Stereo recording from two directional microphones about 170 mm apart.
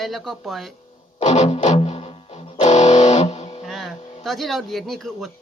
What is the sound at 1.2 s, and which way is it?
Music, 40° left (ahead or behind).